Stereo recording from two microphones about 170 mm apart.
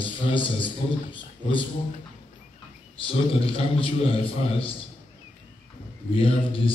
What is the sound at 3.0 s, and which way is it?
A man's voice, 35° left (ahead or behind).